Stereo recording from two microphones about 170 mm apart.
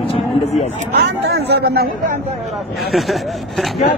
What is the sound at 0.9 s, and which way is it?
Speech, 75° right (ahead or behind).